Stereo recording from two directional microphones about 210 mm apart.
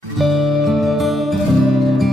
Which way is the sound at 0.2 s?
Centre (ahead or behind).